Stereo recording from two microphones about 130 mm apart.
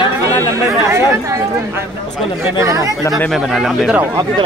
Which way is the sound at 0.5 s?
25° right (ahead or behind).